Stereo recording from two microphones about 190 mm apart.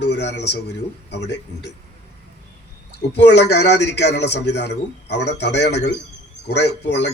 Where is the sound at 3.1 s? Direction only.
65° left (ahead or behind).